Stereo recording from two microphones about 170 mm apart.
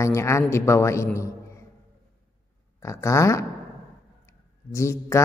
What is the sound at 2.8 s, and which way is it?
Speech, 15° left (ahead or behind).